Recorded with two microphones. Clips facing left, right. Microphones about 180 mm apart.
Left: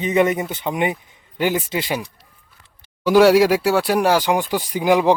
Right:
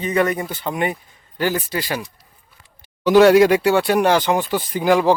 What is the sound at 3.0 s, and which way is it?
Speech, 10° left (ahead or behind).